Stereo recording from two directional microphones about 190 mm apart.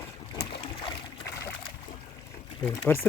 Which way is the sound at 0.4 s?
60° left (ahead or behind).